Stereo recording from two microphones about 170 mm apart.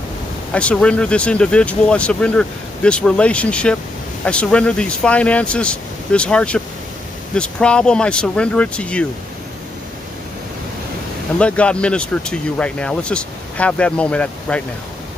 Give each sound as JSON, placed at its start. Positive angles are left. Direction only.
{"t": 0.5, "sound": "speech", "side_deg": 5}
{"t": 11.3, "sound": "speech", "side_deg": 5}